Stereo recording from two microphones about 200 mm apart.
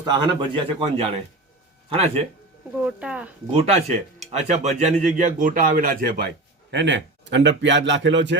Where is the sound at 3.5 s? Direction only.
35° right (ahead or behind).